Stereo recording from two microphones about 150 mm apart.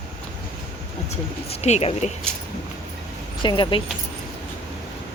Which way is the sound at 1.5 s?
45° left (ahead or behind).